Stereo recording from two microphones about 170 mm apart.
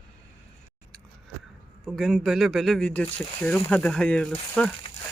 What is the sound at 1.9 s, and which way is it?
Speech, centre (ahead or behind).